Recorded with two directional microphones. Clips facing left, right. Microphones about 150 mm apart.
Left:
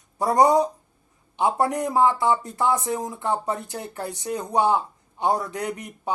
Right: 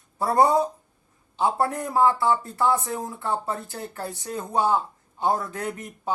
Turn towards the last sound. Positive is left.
turn(degrees=15)  # may be behind; listen again after turning